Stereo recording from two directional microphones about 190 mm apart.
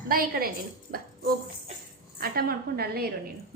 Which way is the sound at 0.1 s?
50° right (ahead or behind).